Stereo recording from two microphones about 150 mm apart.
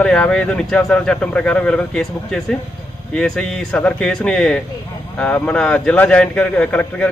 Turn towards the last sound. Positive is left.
turn(degrees=10)  # may be behind; listen again after turning